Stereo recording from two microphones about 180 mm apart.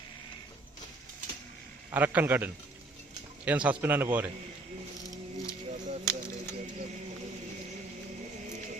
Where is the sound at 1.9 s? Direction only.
10° right (ahead or behind).